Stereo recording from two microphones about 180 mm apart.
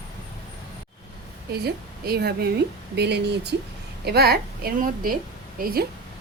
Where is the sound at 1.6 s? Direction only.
60° right (ahead or behind).